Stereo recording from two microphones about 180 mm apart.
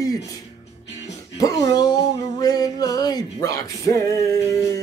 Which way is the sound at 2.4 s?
20° left (ahead or behind).